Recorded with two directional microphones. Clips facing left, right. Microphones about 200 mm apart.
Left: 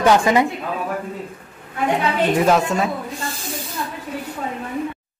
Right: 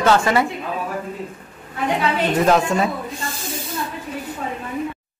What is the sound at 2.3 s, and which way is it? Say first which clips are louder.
Speech: right 2 dB; 5° left (ahead or behind).